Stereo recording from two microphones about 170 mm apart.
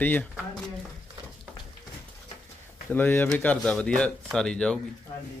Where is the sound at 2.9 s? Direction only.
10° left (ahead or behind).